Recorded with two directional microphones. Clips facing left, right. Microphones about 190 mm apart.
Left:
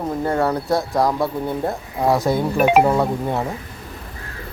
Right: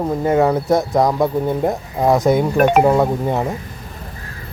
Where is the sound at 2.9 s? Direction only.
20° right (ahead or behind).